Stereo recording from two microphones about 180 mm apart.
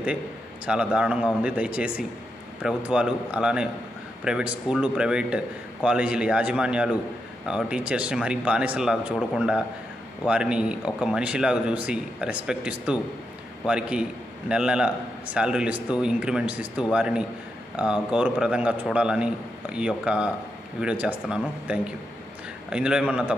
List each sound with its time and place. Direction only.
0.7 s a man's voice: 5° right (ahead or behind)